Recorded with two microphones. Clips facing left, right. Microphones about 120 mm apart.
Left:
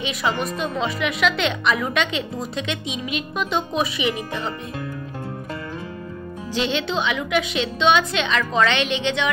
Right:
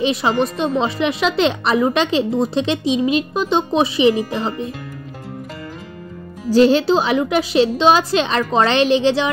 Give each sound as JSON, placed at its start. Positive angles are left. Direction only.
{"t": 0.0, "sound": "a woman's voice", "side_deg": -30}
{"t": 6.5, "sound": "a woman's voice", "side_deg": -40}